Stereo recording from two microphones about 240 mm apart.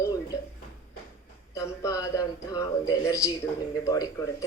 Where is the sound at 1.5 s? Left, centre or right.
Centre.